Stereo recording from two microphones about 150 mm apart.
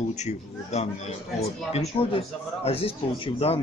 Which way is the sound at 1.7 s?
40° left (ahead or behind).